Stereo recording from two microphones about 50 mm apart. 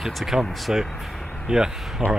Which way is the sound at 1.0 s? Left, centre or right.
Centre.